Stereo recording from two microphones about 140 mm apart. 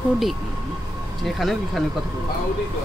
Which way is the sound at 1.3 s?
Centre (ahead or behind).